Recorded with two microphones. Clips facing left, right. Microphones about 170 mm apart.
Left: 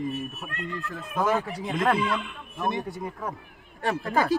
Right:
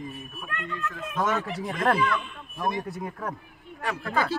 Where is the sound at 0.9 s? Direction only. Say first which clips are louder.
Left 2 dB; 30° left (ahead or behind).